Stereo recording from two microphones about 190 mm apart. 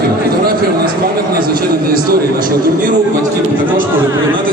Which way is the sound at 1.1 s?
50° right (ahead or behind).